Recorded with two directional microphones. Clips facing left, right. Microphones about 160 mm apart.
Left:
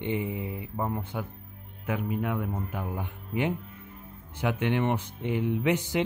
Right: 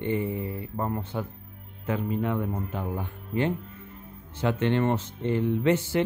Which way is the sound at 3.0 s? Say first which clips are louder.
Right 2 dB; 15° left (ahead or behind).